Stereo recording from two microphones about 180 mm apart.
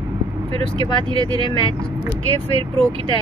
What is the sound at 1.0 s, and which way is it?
Speech, 25° right (ahead or behind).